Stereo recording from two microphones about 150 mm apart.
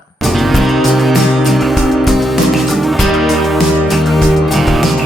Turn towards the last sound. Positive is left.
turn(degrees=0)  # may be behind; listen again after turning